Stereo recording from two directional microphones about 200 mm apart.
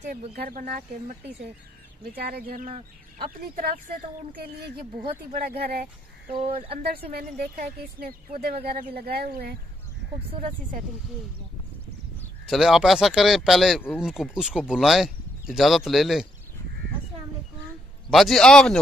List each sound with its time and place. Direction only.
0.1 s speech: 45° right (ahead or behind)
2.1 s speech: 50° right (ahead or behind)
6.3 s speech: 30° right (ahead or behind)
6.9 s speech: 50° right (ahead or behind)
12.4 s speech: centre (ahead or behind)
18.1 s speech: centre (ahead or behind)